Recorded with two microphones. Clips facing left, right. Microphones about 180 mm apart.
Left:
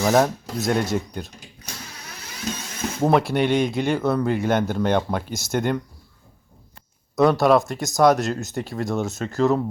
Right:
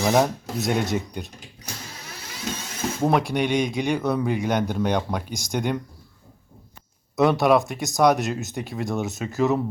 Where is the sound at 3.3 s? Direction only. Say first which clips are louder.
Left 2 dB; 5° left (ahead or behind).